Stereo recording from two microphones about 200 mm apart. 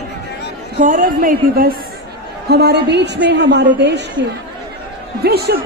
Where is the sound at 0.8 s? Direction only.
40° right (ahead or behind); by 4.2 s 60° right (ahead or behind).